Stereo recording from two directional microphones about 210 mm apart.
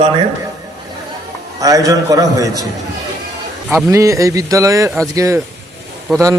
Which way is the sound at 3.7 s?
15° right (ahead or behind).